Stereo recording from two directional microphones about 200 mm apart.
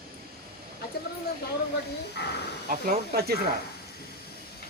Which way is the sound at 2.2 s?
55° left (ahead or behind).